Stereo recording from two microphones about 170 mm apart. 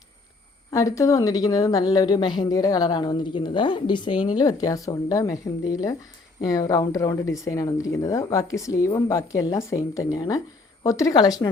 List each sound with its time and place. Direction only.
0.7 s speech: 20° left (ahead or behind)